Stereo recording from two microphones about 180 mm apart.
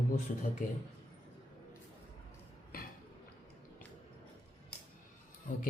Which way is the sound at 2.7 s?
55° left (ahead or behind).